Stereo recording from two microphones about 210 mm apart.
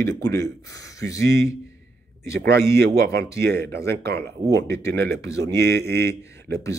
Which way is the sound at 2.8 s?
50° right (ahead or behind).